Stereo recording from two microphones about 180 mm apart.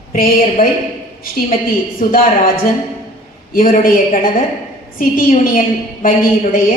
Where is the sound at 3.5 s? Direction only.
50° left (ahead or behind).